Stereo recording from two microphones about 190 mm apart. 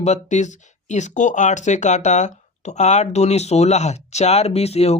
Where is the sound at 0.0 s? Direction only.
40° left (ahead or behind).